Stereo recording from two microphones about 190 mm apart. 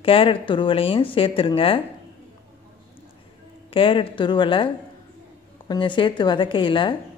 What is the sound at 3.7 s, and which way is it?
Speech, 25° left (ahead or behind).